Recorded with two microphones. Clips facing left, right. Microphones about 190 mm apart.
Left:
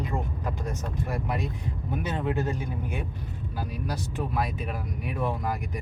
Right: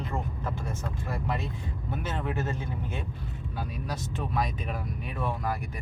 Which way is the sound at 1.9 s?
15° left (ahead or behind).